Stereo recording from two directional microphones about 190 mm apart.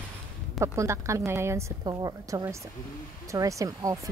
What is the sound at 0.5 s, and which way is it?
Speech, 15° right (ahead or behind).